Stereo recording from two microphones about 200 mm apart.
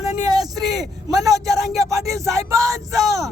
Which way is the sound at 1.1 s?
15° right (ahead or behind).